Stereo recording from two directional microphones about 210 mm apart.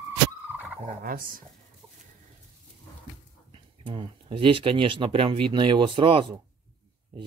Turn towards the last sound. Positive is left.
turn(degrees=-25)  # may be behind; listen again after turning